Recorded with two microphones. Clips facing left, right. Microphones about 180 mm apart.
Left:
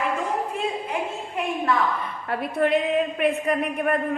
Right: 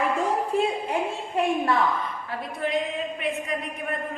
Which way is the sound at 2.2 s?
65° left (ahead or behind).